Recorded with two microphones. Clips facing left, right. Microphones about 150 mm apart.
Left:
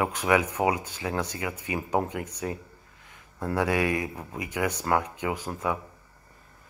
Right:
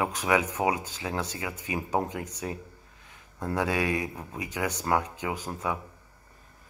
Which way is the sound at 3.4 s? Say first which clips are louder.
Left 2 dB; 15° right (ahead or behind).